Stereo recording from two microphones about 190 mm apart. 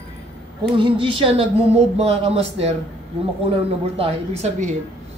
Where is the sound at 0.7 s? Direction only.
25° right (ahead or behind).